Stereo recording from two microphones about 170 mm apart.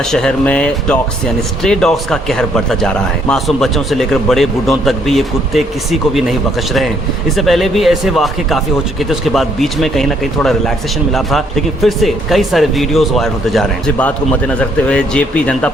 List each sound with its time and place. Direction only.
0.0 s speech: 5° left (ahead or behind)